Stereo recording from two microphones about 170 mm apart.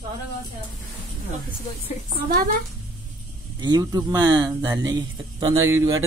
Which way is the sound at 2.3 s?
55° right (ahead or behind).